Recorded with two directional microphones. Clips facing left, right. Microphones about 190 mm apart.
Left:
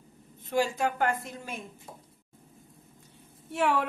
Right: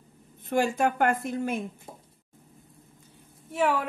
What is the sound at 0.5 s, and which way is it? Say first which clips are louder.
A woman's voice: right 3 dB; 55° right (ahead or behind).